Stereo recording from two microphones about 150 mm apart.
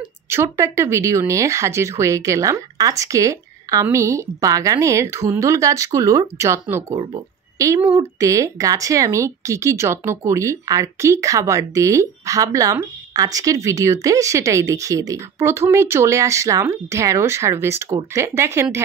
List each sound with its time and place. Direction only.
0.3 s speech: 15° right (ahead or behind)